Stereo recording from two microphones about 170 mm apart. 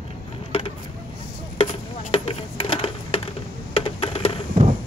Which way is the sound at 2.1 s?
35° left (ahead or behind).